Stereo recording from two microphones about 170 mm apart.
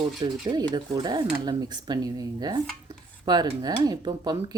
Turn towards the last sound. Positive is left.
turn(degrees=-25)  # may be behind; listen again after turning